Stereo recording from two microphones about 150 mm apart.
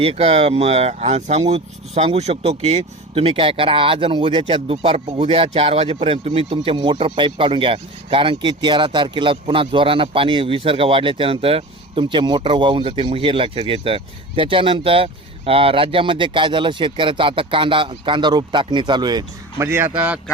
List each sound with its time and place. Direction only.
0.0 s speech: 40° right (ahead or behind)
19.6 s speech: 15° right (ahead or behind)